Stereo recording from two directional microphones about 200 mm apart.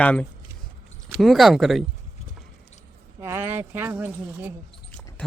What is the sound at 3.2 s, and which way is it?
Speech, 10° right (ahead or behind).